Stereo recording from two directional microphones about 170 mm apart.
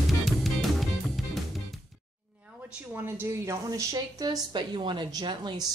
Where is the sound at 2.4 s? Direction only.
10° right (ahead or behind).